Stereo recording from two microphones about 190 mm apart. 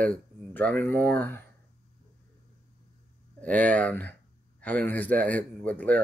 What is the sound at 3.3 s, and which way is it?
Speech, 5° left (ahead or behind).